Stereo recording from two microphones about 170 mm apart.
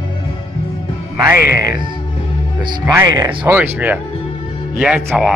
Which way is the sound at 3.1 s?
25° right (ahead or behind).